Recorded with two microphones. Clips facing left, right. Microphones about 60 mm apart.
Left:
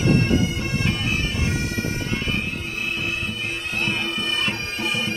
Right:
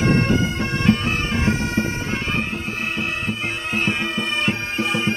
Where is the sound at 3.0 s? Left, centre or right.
Right.